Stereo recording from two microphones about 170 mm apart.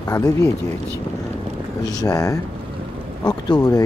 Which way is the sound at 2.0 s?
20° left (ahead or behind).